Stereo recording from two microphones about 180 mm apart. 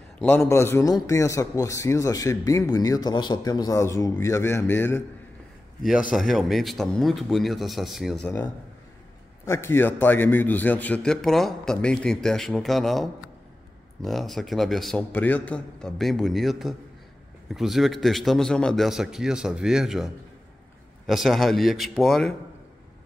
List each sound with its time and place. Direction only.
0.2 s a man's voice: 5° left (ahead or behind)
5.9 s a man's voice: 5° right (ahead or behind)
21.1 s a man's voice: centre (ahead or behind)